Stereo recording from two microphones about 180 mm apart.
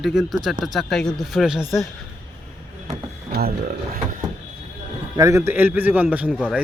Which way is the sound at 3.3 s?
60° right (ahead or behind).